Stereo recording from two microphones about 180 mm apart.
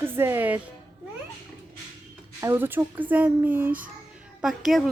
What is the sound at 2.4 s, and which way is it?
A woman's voice, 15° right (ahead or behind).